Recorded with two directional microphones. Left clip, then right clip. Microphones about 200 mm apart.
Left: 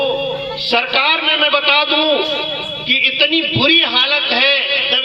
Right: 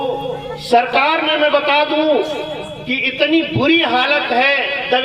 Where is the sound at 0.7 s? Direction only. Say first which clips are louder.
Right 1 dB; 35° right (ahead or behind).